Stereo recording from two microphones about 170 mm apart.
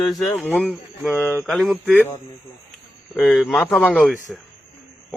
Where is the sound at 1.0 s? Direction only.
5° right (ahead or behind).